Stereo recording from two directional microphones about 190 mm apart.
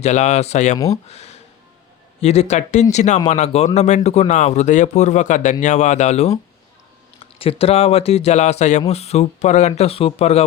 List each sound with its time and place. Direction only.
0.0 s speech: 35° left (ahead or behind)